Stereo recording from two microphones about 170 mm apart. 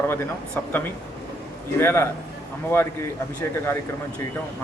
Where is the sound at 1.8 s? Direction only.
15° left (ahead or behind).